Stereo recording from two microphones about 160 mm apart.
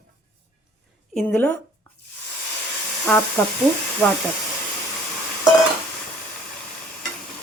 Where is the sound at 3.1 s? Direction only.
10° left (ahead or behind).